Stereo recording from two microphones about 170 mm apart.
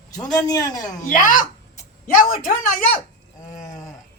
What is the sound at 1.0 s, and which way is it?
Speech, 50° left (ahead or behind).